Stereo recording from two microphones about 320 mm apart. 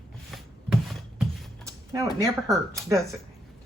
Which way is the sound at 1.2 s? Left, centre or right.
Centre.